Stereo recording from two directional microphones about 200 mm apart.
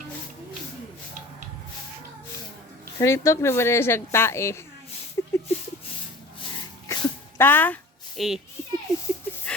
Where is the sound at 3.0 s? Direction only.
15° left (ahead or behind).